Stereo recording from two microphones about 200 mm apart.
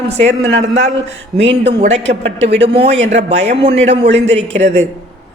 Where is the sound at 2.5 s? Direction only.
60° right (ahead or behind).